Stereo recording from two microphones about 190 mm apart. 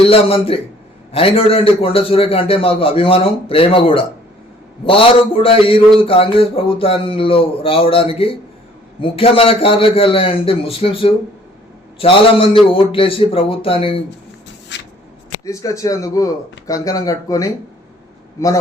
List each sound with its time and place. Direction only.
0.0 s a man's voice: 30° left (ahead or behind)
14.7 s shuffle: 65° left (ahead or behind)
15.4 s speech: 15° left (ahead or behind)